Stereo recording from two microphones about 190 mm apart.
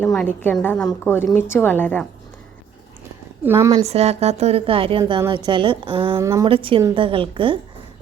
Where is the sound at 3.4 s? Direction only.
15° right (ahead or behind).